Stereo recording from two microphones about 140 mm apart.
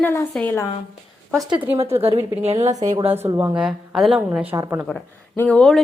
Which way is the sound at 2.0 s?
45° right (ahead or behind).